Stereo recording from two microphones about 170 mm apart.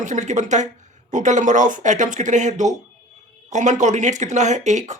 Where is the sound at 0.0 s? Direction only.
45° right (ahead or behind).